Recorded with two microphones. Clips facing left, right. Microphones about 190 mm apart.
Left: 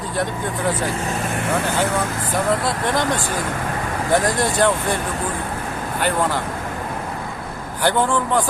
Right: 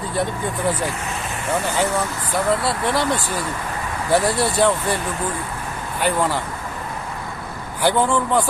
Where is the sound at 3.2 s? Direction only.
45° left (ahead or behind).